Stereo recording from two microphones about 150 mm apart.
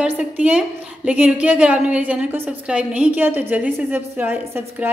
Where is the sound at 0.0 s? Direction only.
10° right (ahead or behind).